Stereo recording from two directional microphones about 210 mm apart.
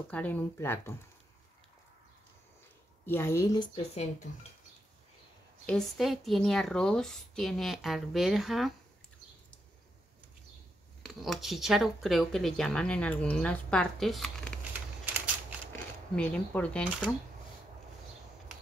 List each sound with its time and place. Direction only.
0.1 s speech: 10° left (ahead or behind)
3.1 s speech: 10° left (ahead or behind)
3.7 s speech: 30° left (ahead or behind)
5.7 s speech: centre (ahead or behind)
11.0 s speech: centre (ahead or behind)
15.7 s speech: 5° left (ahead or behind)